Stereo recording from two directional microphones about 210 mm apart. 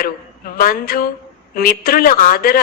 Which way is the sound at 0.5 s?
45° left (ahead or behind).